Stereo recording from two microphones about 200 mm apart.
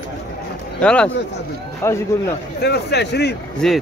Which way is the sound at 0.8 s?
5° left (ahead or behind).